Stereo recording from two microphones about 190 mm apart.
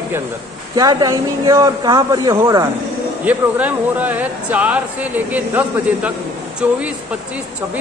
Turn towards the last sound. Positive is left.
turn(degrees=-10)  # may be behind; listen again after turning